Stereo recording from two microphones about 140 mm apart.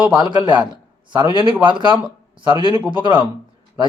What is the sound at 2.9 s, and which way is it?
Speech, 35° right (ahead or behind).